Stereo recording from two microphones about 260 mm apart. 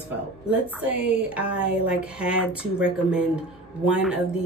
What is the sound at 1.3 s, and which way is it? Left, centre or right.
Speech, centre.